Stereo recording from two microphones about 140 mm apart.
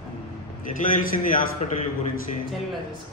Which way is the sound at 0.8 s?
70° left (ahead or behind).